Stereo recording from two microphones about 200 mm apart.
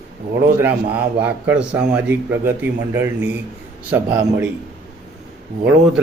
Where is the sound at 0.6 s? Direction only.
10° right (ahead or behind).